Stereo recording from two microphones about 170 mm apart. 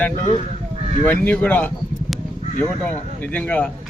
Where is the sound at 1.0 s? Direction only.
10° left (ahead or behind).